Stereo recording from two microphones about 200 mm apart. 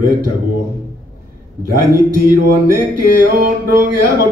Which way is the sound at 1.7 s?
45° right (ahead or behind).